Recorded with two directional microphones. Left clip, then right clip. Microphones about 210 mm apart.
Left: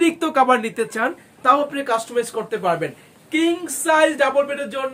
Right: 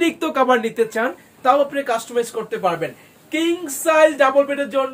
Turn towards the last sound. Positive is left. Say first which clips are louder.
# right 3 dB
turn(degrees=15)  # may be behind; listen again after turning